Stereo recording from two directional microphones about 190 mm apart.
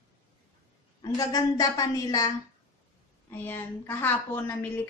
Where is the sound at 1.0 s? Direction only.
20° left (ahead or behind).